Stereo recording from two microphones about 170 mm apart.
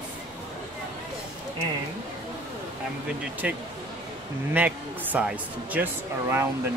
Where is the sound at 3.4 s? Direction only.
5° right (ahead or behind).